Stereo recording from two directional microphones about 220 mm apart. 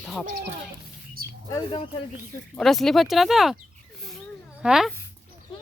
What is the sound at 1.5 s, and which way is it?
Speech, 15° left (ahead or behind).